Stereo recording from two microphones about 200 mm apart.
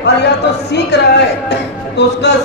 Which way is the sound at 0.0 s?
60° left (ahead or behind).